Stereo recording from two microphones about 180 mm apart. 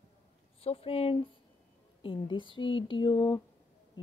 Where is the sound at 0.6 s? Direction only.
35° left (ahead or behind).